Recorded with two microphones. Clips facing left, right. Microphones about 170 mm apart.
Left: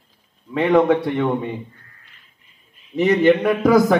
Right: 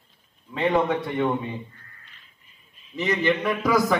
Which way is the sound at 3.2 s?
55° left (ahead or behind).